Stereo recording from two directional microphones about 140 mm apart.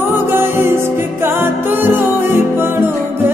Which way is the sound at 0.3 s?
15° right (ahead or behind).